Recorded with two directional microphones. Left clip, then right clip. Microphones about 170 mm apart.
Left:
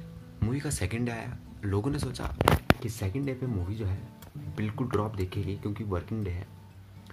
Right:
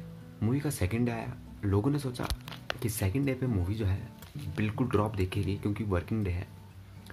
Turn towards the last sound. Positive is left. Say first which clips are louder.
# right 2 dB
turn(degrees=-10)  # may be behind; listen again after turning